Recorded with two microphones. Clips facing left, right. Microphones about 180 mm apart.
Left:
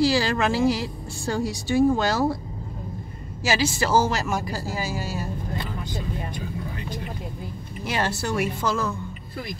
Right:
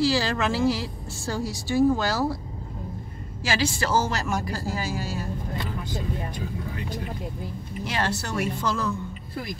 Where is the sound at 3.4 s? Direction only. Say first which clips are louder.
Left 2 dB; 10° left (ahead or behind).